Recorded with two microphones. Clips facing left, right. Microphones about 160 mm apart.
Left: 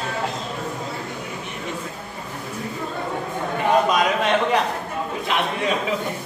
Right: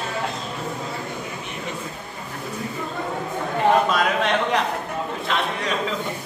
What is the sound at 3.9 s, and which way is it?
Speech, 10° left (ahead or behind).